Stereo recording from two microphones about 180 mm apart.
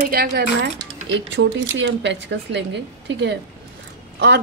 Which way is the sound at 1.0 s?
85° right.